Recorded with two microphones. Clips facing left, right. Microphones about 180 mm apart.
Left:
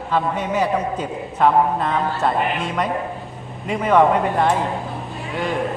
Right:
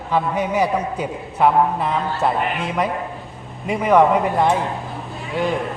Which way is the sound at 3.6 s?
15° right (ahead or behind).